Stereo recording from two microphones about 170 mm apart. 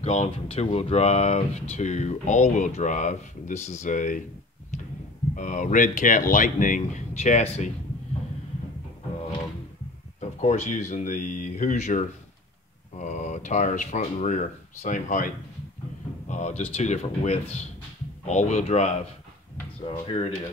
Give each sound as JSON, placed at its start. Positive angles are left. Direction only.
{"t": 0.0, "sound": "speech", "side_deg": 35}
{"t": 5.3, "sound": "speech", "side_deg": 50}
{"t": 10.4, "sound": "speech", "side_deg": 45}